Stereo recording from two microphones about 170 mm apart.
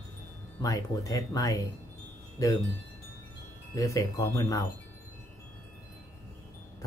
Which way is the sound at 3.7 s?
20° left (ahead or behind).